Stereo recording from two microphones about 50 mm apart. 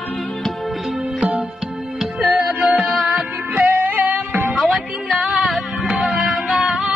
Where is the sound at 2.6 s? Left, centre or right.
Right.